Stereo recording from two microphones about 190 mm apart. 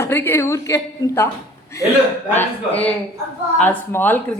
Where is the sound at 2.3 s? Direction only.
10° left (ahead or behind).